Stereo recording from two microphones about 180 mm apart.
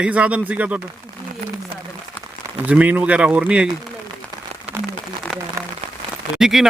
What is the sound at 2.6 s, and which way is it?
Speech, 10° right (ahead or behind).